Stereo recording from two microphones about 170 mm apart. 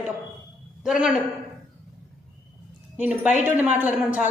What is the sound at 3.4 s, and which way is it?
Speech, 10° right (ahead or behind).